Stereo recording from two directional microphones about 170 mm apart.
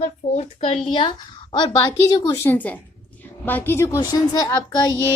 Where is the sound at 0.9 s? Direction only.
30° left (ahead or behind).